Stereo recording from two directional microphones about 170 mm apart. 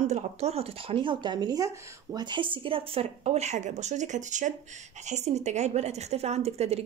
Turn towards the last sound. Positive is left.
turn(degrees=-40)  # may be behind; listen again after turning